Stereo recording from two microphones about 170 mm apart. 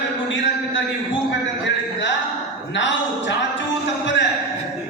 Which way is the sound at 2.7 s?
90° left.